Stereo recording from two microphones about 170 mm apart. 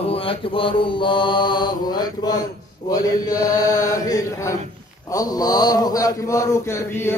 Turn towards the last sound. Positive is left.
turn(degrees=15)  # may be behind; listen again after turning